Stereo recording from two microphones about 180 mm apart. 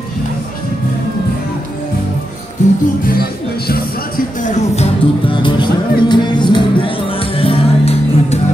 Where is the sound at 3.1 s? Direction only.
60° left (ahead or behind); by 5.7 s 25° left (ahead or behind).